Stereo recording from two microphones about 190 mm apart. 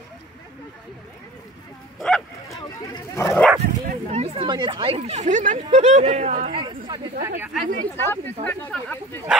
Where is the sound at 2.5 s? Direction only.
15° left (ahead or behind).